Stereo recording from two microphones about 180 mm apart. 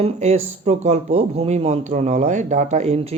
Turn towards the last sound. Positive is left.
turn(degrees=-35)  # may be behind; listen again after turning